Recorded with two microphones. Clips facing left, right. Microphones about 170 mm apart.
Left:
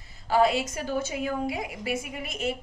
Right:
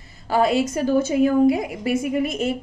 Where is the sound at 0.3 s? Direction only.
50° right (ahead or behind).